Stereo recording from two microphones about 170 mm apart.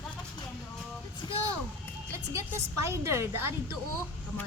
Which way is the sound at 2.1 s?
15° right (ahead or behind).